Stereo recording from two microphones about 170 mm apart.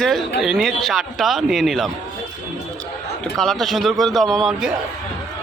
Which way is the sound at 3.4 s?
Centre (ahead or behind).